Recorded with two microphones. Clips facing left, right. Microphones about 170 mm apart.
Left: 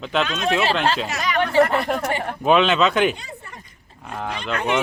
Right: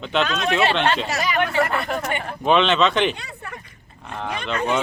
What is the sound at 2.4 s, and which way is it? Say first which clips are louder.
Speech: left 1 dB; 5° left (ahead or behind).